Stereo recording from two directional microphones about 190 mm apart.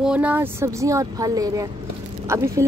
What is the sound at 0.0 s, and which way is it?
A woman's voice, 5° right (ahead or behind).